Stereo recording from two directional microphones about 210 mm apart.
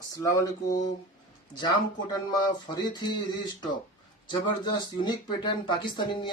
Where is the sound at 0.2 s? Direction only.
15° left (ahead or behind).